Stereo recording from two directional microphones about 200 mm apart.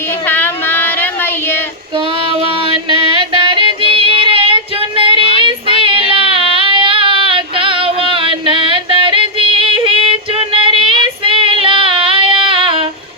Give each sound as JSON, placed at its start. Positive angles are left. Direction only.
{"t": 0.3, "sound": "child singing", "side_deg": 10}
{"t": 2.2, "sound": "music", "side_deg": -25}